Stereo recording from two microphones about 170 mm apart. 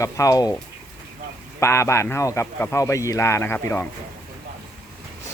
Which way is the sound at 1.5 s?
15° left (ahead or behind).